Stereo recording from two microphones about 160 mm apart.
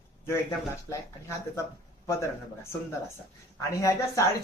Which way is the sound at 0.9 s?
20° left (ahead or behind).